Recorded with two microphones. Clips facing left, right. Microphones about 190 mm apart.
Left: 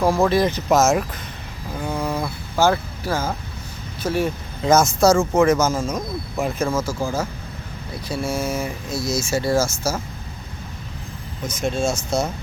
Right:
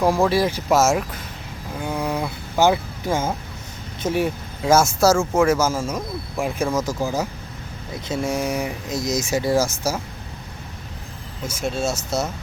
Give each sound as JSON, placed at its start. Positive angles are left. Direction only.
{"t": 0.2, "sound": "speech", "side_deg": -5}
{"t": 6.7, "sound": "speech", "side_deg": -20}
{"t": 11.4, "sound": "speech", "side_deg": -5}